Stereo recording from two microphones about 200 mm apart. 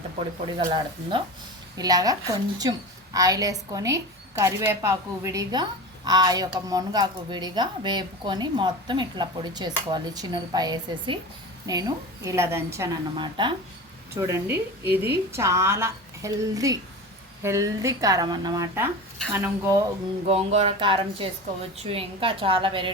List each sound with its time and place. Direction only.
0.4 s a woman's voice: 25° right (ahead or behind)
20.2 s a woman's voice: 30° right (ahead or behind)